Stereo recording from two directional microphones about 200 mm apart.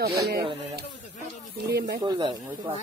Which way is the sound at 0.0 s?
50° right (ahead or behind).